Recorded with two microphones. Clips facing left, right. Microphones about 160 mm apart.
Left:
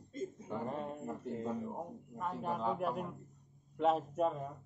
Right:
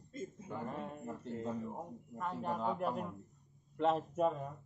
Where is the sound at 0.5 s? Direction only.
20° left (ahead or behind).